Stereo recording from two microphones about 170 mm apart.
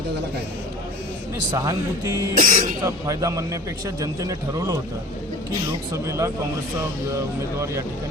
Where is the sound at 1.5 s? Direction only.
20° right (ahead or behind).